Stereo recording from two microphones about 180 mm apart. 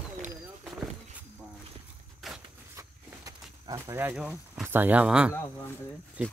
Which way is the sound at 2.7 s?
20° right (ahead or behind).